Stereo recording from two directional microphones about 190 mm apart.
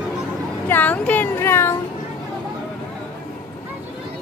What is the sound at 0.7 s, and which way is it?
Speech, 10° left (ahead or behind).